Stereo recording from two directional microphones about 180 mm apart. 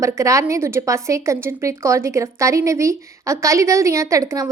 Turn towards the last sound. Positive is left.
turn(degrees=-20)  # may be behind; listen again after turning